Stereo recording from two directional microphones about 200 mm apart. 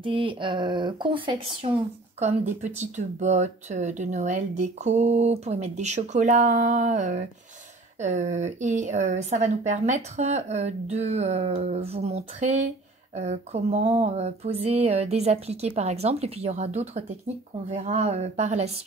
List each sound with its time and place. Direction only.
0.0 s speech: 25° right (ahead or behind)